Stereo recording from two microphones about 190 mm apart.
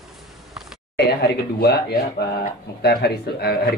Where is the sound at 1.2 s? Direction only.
60° left (ahead or behind).